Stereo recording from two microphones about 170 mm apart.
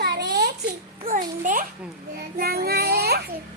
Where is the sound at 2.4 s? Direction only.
65° right (ahead or behind).